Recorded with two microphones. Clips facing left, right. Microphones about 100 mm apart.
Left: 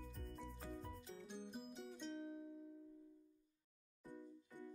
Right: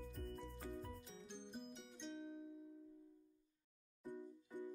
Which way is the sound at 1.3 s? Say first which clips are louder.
Even; 5° left (ahead or behind).